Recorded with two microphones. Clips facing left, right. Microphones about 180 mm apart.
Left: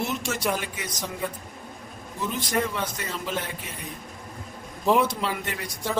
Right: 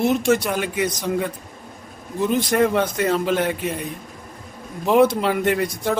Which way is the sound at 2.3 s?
60° right (ahead or behind).